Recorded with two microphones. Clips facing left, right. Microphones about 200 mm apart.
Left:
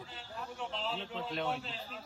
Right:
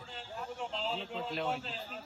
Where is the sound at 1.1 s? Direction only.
Centre (ahead or behind).